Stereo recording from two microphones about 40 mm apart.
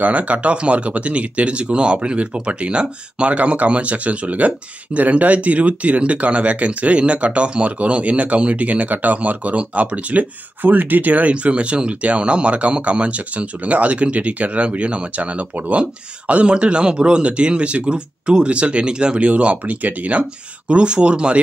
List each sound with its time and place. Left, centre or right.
0.0 s speech: right